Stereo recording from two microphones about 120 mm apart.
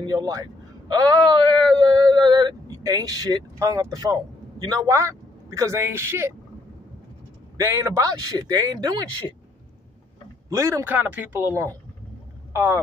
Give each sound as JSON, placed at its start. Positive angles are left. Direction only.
{"t": 0.0, "sound": "speech", "side_deg": -30}
{"t": 7.5, "sound": "speech", "side_deg": -25}
{"t": 10.5, "sound": "speech", "side_deg": -25}